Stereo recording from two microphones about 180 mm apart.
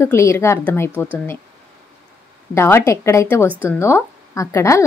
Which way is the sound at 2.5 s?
15° left (ahead or behind).